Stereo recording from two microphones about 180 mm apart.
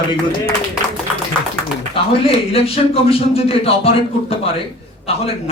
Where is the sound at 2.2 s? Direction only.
30° left (ahead or behind).